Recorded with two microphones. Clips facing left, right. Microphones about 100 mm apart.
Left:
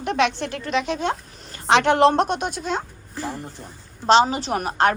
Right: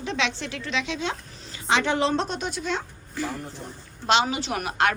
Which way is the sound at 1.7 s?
70° left (ahead or behind).